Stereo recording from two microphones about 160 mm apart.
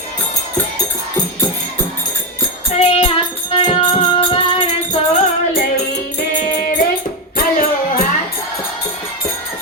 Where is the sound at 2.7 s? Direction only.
40° left (ahead or behind).